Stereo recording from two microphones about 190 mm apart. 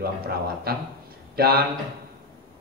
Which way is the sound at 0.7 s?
55° right (ahead or behind).